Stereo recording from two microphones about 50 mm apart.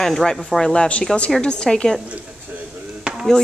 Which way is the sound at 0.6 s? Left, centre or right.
Centre.